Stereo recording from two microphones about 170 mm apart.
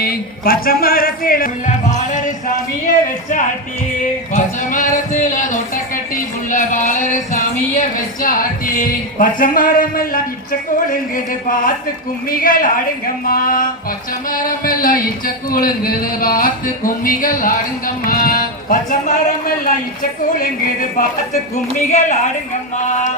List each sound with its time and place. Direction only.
0.0 s speech: 60° left (ahead or behind)
4.3 s a sound: 50° left (ahead or behind)
10.8 s music: 55° left (ahead or behind)
21.8 s a woman's voice: 45° left (ahead or behind)